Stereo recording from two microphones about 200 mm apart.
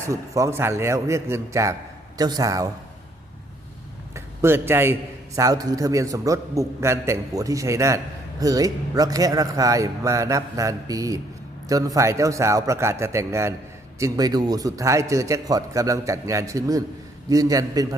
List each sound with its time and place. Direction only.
0.0 s a man's voice: 15° right (ahead or behind)
4.1 s a man's voice: 10° right (ahead or behind)